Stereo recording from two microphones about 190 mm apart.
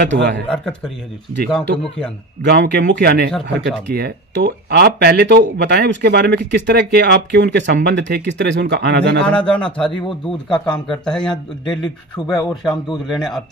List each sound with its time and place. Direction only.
0.0 s a man's voice: 65° right (ahead or behind)
0.5 s a man's voice: 5° left (ahead or behind)
2.4 s speech: 60° right (ahead or behind)
9.3 s speech: 5° left (ahead or behind)
12.3 s speech: 20° left (ahead or behind)
13.0 s speech: centre (ahead or behind)